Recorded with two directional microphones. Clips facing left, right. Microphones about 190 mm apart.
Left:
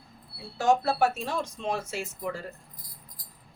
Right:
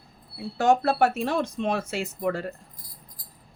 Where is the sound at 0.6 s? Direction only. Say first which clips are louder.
Right 3 dB; 60° right (ahead or behind).